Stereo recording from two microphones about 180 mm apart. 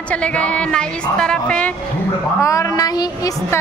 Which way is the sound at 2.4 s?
20° left (ahead or behind).